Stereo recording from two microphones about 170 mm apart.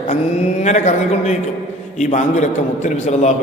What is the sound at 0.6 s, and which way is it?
A man's voice, 45° left (ahead or behind).